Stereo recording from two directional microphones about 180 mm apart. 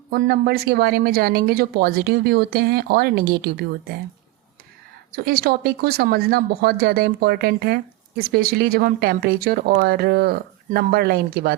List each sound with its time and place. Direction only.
0.1 s speech: 55° right (ahead or behind)
5.1 s speech: 60° right (ahead or behind)